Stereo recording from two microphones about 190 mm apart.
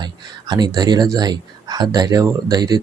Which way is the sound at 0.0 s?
20° right (ahead or behind).